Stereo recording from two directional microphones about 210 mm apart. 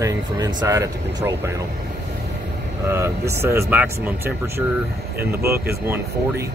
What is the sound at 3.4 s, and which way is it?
Speech, 10° right (ahead or behind).